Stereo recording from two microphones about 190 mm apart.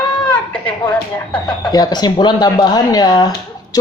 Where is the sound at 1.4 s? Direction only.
20° left (ahead or behind).